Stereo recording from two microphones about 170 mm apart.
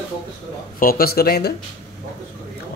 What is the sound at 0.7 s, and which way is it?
Speech, 60° left (ahead or behind).